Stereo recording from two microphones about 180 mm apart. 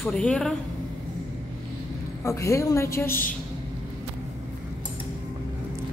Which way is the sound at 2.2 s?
15° left (ahead or behind).